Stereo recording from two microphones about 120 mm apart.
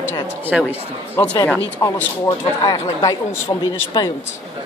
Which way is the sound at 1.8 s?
30° left (ahead or behind).